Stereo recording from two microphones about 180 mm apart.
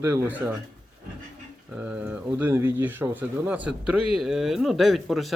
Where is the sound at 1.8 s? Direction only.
10° right (ahead or behind).